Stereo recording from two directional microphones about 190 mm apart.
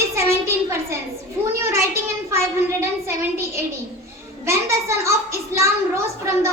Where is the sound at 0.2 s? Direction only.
15° right (ahead or behind).